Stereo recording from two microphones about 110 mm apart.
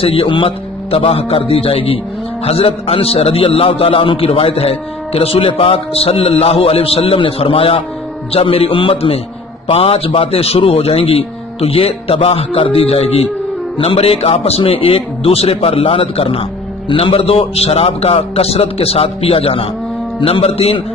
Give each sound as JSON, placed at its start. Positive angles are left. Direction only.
{"t": 0.0, "sound": "a man's voice", "side_deg": 55}